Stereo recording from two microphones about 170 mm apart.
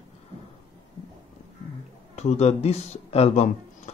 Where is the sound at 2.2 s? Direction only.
40° left (ahead or behind).